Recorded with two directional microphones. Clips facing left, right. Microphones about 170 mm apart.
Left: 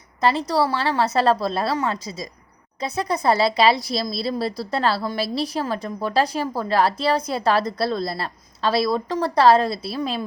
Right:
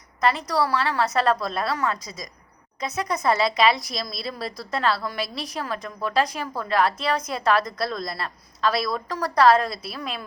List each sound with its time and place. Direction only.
0.2 s a woman's voice: 30° left (ahead or behind)